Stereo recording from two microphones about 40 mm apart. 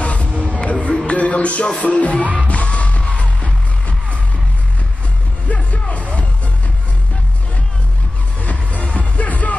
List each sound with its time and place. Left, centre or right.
0.0 s music: left
5.5 s music: left
8.4 s music: left